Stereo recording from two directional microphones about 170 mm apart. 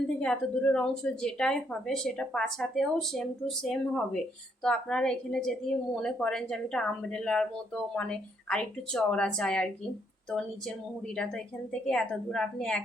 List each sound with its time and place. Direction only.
0.2 s a woman's voice: 5° left (ahead or behind)